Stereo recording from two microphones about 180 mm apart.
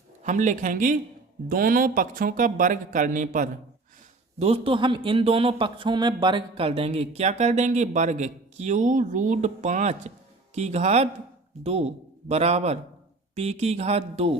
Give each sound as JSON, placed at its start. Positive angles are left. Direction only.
{"t": 0.3, "sound": "speech", "side_deg": -45}
{"t": 4.4, "sound": "speech", "side_deg": -35}